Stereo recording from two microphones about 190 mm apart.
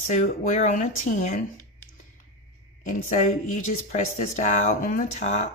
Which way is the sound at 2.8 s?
45° left (ahead or behind).